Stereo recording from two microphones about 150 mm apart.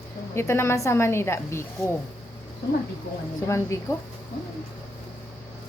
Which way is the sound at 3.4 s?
20° left (ahead or behind).